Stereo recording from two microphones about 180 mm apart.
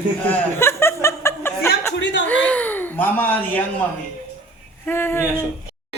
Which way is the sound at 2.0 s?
75° left (ahead or behind).